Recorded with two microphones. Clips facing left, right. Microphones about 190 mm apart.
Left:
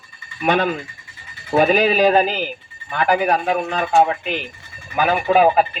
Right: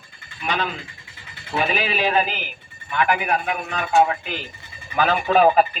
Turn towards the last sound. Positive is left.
turn(degrees=5)  # may be behind; listen again after turning